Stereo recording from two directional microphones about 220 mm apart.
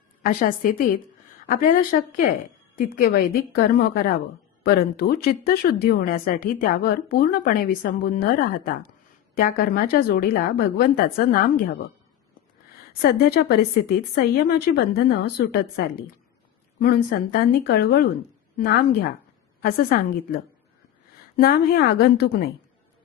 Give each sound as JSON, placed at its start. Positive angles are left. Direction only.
{"t": 0.2, "sound": "a woman's voice", "side_deg": 40}
{"t": 12.9, "sound": "speech", "side_deg": 45}
{"t": 16.8, "sound": "a woman's voice", "side_deg": 45}